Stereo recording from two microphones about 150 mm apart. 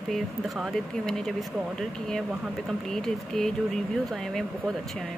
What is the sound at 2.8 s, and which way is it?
Speech, 5° left (ahead or behind).